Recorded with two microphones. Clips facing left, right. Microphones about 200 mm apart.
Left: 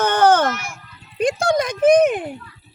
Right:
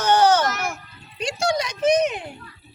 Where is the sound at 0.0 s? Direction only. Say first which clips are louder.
Left 2 dB; 55° left (ahead or behind).